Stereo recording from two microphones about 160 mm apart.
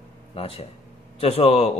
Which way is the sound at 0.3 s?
40° left (ahead or behind).